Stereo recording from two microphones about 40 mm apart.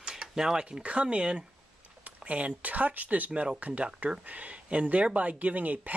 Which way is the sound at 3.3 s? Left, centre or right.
Right.